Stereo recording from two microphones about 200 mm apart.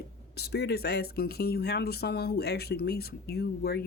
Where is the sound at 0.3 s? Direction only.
55° left (ahead or behind).